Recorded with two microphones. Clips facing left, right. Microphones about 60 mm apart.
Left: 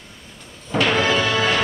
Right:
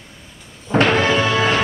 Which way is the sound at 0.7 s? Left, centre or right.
Right.